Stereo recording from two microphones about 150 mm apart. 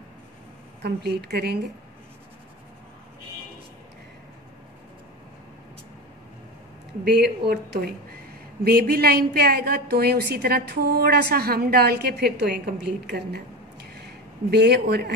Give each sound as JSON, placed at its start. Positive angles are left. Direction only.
{"t": 0.8, "sound": "a woman's voice", "side_deg": -90}
{"t": 7.1, "sound": "a woman's voice", "side_deg": -90}